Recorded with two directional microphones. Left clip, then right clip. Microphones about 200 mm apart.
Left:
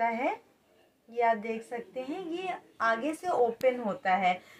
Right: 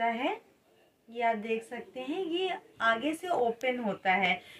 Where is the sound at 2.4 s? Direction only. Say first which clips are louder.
Left 1 dB; 25° right (ahead or behind).